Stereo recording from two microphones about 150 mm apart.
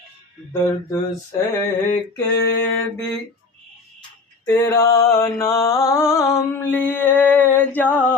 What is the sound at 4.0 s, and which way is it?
Mantra, 25° left (ahead or behind).